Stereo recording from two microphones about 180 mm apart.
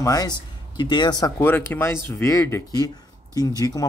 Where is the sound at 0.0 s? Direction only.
20° left (ahead or behind).